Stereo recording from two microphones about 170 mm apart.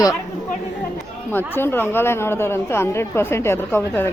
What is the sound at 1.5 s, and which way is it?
Speech, 15° left (ahead or behind).